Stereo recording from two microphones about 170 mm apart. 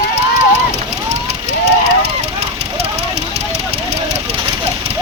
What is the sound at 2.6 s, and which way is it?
Vehicle, 40° right (ahead or behind).